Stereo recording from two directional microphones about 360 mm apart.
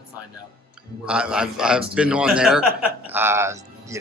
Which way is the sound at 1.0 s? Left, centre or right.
Centre.